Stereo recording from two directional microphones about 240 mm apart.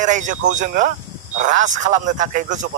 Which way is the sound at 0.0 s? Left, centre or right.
Right.